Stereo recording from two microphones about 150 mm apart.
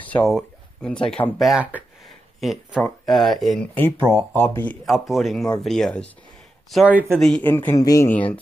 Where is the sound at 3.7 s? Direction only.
15° left (ahead or behind).